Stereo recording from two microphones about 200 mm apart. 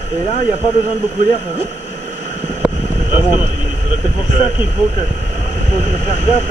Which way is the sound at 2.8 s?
40° right (ahead or behind).